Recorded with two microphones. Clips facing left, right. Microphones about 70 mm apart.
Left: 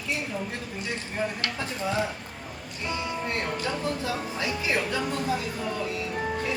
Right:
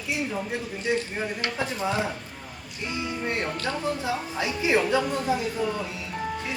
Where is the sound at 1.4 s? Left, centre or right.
Right.